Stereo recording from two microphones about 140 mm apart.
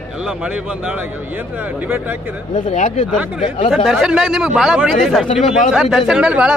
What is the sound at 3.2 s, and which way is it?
A man's voice, 10° right (ahead or behind).